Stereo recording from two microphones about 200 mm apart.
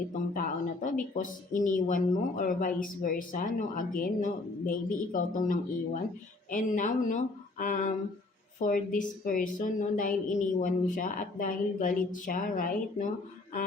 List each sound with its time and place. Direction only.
0.3 s speech: 40° left (ahead or behind)